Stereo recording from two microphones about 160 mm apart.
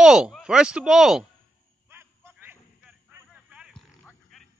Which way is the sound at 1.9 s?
15° right (ahead or behind).